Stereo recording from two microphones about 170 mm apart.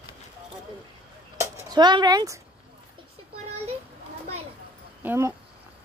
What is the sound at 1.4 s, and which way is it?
Speech, 25° right (ahead or behind).